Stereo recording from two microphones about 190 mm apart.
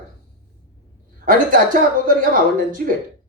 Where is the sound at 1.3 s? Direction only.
45° right (ahead or behind).